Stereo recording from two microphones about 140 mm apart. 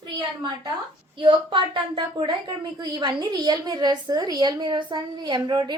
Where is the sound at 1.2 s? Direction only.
35° right (ahead or behind).